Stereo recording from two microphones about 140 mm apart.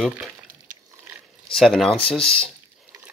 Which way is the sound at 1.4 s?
5° left (ahead or behind).